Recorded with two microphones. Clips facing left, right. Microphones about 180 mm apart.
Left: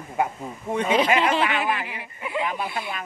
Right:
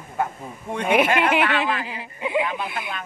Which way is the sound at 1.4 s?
20° left (ahead or behind).